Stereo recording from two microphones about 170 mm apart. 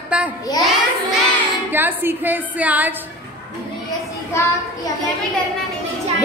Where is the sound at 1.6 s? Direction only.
10° right (ahead or behind).